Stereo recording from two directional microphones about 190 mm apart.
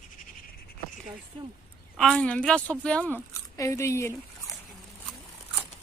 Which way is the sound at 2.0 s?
5° left (ahead or behind).